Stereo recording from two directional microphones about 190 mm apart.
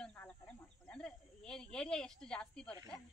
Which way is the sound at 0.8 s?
5° left (ahead or behind).